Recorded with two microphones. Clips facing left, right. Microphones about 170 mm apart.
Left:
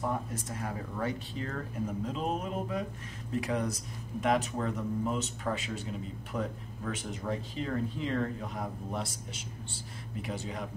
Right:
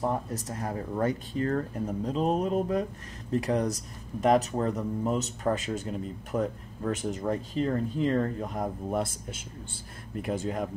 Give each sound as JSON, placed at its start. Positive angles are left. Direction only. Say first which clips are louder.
{"t": 0.0, "sound": "speech", "louder": "right 4 dB", "side_deg": -35}